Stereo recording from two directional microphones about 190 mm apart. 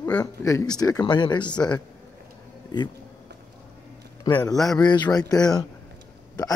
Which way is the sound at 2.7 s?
20° left (ahead or behind).